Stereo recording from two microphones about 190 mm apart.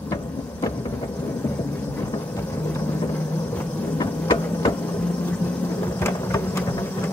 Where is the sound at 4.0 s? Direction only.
20° left (ahead or behind).